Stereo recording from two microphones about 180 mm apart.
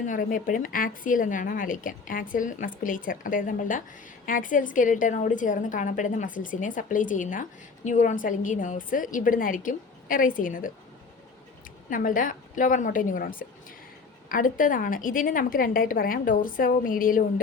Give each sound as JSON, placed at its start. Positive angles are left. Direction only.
{"t": 0.0, "sound": "a woman's voice", "side_deg": 45}
{"t": 11.9, "sound": "a woman's voice", "side_deg": 50}